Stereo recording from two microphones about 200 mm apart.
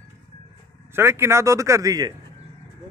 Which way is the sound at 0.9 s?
15° right (ahead or behind).